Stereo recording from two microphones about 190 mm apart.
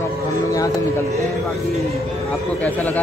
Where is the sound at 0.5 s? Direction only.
20° left (ahead or behind).